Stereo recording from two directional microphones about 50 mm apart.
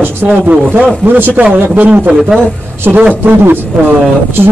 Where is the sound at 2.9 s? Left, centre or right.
Right.